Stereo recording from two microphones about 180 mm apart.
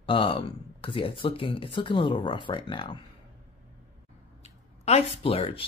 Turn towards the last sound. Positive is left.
turn(degrees=30)  # may be behind; listen again after turning